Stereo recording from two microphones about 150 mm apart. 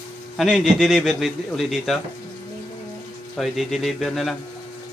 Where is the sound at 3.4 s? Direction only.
Centre (ahead or behind).